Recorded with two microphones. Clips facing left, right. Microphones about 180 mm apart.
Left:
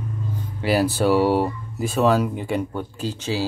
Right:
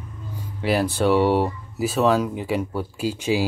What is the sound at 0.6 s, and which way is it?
Speech, centre (ahead or behind).